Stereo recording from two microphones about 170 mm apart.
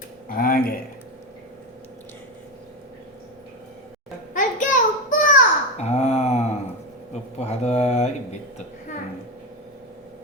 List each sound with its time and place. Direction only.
0.3 s speech: 55° left (ahead or behind)
4.4 s child singing: 50° left (ahead or behind)
7.1 s a sound: 40° left (ahead or behind)